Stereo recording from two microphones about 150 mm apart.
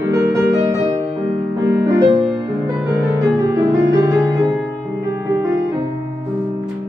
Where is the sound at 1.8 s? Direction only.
25° right (ahead or behind).